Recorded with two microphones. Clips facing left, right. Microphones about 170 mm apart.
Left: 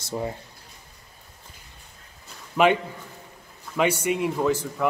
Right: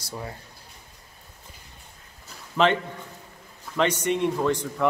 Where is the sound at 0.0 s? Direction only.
25° left (ahead or behind).